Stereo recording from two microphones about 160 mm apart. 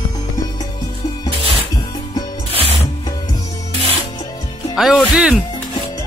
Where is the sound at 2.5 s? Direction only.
35° right (ahead or behind).